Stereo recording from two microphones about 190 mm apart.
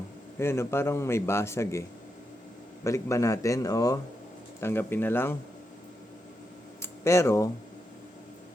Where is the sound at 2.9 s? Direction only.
15° left (ahead or behind).